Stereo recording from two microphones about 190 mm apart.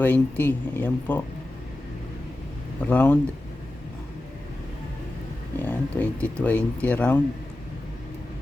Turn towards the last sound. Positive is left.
turn(degrees=10)  # may be behind; listen again after turning